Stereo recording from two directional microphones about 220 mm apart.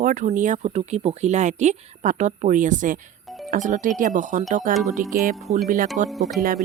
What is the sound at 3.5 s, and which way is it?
Speech, 35° right (ahead or behind).